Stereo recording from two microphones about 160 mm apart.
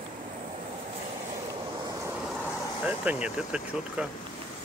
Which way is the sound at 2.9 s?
10° right (ahead or behind).